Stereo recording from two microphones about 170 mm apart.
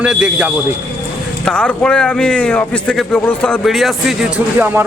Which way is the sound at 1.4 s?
5° left (ahead or behind).